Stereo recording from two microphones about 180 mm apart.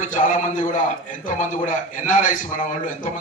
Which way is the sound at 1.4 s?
45° left (ahead or behind).